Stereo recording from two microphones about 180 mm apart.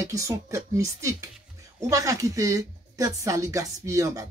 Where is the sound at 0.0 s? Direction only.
15° right (ahead or behind).